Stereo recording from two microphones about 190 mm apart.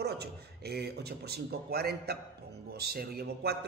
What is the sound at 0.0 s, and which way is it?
A man's voice, 60° right (ahead or behind).